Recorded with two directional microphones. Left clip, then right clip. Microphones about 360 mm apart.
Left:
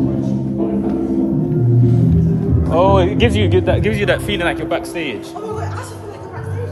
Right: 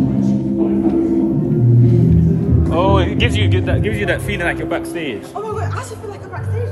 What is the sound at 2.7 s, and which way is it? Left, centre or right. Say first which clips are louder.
Speech: left 3 dB; centre.